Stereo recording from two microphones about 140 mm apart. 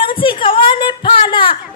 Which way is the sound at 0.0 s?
35° left (ahead or behind).